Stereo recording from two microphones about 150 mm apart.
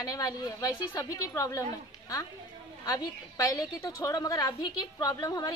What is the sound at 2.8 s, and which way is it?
A woman's voice, 25° left (ahead or behind).